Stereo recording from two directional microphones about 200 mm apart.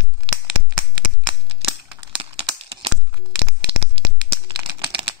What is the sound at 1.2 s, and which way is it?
Scissors, 30° right (ahead or behind).